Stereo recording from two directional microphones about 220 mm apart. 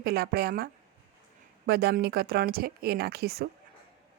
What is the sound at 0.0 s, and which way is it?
Speech, 45° right (ahead or behind).